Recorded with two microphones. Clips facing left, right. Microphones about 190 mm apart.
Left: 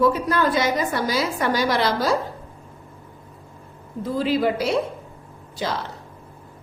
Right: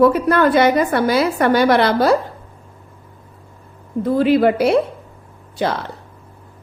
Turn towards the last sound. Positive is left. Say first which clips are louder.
# right 6 dB
turn(degrees=-60)  # may be behind; listen again after turning